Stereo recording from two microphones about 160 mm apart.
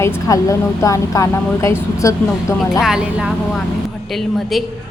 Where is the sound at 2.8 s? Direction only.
5° right (ahead or behind).